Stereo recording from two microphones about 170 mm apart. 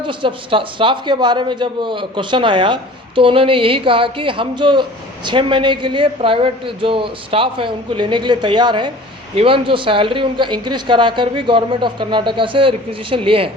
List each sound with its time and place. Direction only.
0.0 s a woman's voice: 30° right (ahead or behind)